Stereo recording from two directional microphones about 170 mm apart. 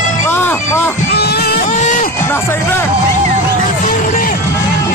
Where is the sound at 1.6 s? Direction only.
50° left (ahead or behind).